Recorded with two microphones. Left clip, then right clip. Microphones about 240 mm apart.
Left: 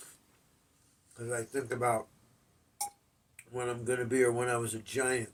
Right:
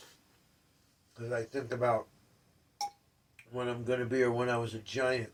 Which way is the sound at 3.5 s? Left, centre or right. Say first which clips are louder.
Even; centre.